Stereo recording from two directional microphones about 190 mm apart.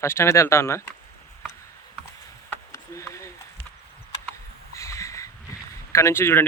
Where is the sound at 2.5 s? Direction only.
15° left (ahead or behind).